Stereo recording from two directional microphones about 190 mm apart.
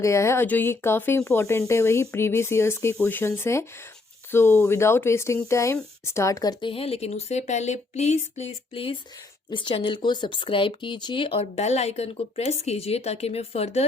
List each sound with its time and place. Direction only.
0.0 s speech: 15° left (ahead or behind); by 13.8 s 35° left (ahead or behind)